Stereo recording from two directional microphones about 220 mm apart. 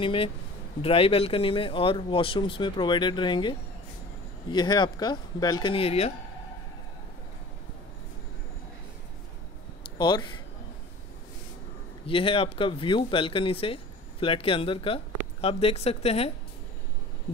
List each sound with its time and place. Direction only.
0.0 s speech: 25° left (ahead or behind)
9.9 s speech: 20° left (ahead or behind)
12.1 s speech: 25° left (ahead or behind)